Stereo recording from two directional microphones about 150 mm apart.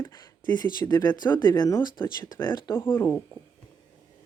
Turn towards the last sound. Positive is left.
turn(degrees=15)  # may be behind; listen again after turning